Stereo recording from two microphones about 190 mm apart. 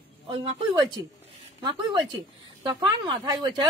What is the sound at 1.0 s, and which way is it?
Speech, 20° right (ahead or behind).